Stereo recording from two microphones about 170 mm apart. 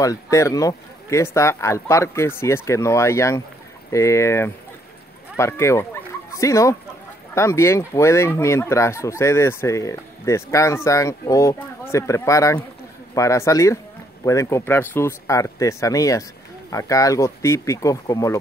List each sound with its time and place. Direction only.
0.0 s speech: 20° left (ahead or behind)